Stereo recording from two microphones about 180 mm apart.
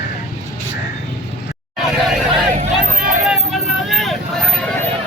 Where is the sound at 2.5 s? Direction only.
45° right (ahead or behind).